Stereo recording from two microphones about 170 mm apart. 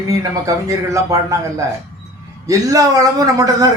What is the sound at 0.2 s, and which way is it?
A man's voice, 20° right (ahead or behind).